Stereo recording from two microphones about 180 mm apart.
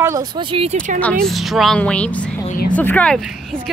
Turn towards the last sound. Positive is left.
turn(degrees=0)  # may be behind; listen again after turning